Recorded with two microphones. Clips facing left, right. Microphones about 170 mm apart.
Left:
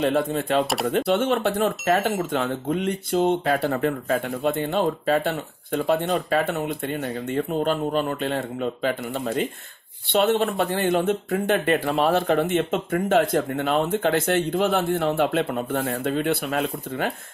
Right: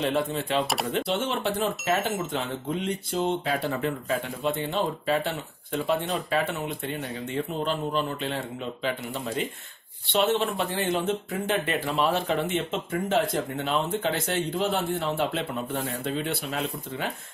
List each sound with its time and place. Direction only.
0.0 s speech: 50° left (ahead or behind)